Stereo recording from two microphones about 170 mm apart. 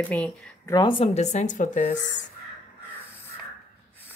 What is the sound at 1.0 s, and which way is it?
Speech, 40° left (ahead or behind).